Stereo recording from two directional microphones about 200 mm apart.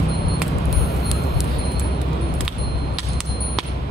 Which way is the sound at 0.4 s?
Centre (ahead or behind).